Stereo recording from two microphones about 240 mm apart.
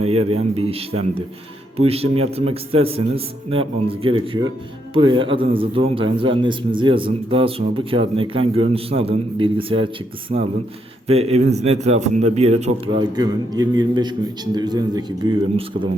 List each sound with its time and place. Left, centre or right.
0.0 s a man's voice: right